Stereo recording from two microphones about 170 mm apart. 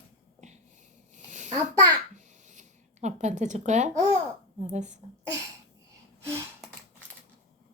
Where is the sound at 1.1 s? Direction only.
45° right (ahead or behind).